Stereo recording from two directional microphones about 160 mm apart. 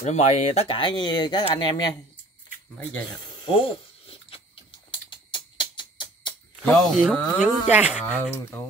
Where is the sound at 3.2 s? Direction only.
30° left (ahead or behind).